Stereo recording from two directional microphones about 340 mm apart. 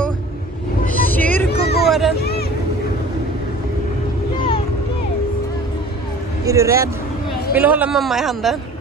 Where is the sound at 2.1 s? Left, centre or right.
Left.